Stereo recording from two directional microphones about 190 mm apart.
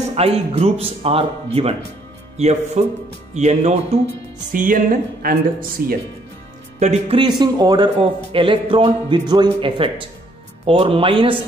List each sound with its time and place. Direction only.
0.1 s speech: 30° right (ahead or behind); by 5.9 s 50° right (ahead or behind)
6.8 s a man's voice: 35° right (ahead or behind)